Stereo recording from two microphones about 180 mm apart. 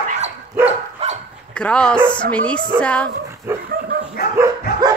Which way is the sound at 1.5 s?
5° left (ahead or behind).